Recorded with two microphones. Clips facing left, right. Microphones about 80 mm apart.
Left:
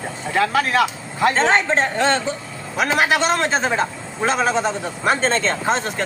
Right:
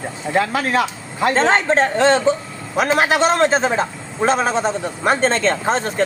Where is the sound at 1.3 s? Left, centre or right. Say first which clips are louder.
Right 4 dB; right.